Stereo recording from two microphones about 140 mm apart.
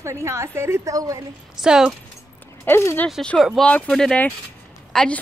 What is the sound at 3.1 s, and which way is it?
Speech, centre (ahead or behind).